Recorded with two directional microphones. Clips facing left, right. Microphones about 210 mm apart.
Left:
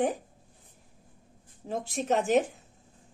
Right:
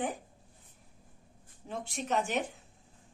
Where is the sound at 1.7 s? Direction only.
40° left (ahead or behind).